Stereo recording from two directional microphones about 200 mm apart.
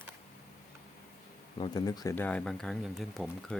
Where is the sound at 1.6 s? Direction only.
20° left (ahead or behind).